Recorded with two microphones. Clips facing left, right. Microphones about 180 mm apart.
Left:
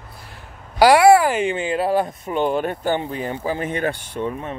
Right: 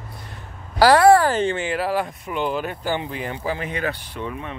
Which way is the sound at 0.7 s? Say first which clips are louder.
Left 1 dB; 10° left (ahead or behind).